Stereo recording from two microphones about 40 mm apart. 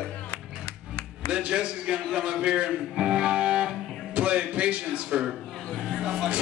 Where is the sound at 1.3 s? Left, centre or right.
Right.